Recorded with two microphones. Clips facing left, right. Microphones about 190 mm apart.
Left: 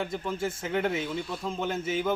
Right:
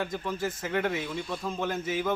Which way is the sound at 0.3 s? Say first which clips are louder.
Left 1 dB; 25° left (ahead or behind).